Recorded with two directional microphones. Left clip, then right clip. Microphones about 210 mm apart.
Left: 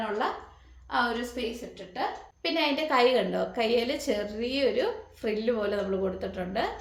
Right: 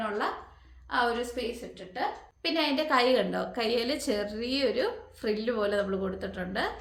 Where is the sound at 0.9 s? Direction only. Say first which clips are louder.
Even; 15° right (ahead or behind).